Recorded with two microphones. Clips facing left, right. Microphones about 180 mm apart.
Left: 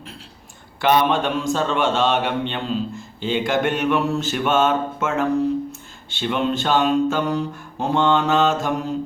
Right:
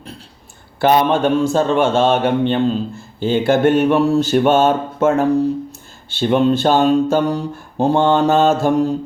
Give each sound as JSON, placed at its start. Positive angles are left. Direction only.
{"t": 0.8, "sound": "a man's voice", "side_deg": -35}